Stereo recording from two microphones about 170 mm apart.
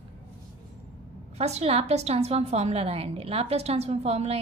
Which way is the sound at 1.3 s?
40° right (ahead or behind).